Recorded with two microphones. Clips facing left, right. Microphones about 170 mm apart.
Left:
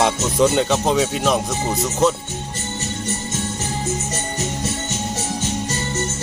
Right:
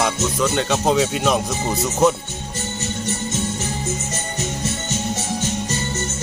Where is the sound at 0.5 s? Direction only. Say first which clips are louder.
Left 1 dB; centre (ahead or behind).